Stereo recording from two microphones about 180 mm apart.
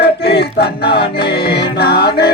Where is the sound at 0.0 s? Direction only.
65° left (ahead or behind).